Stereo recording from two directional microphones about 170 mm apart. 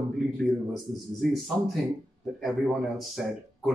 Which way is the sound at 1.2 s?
Centre (ahead or behind).